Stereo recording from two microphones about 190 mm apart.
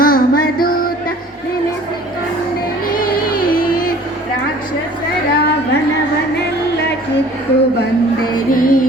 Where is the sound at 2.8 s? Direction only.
50° left (ahead or behind).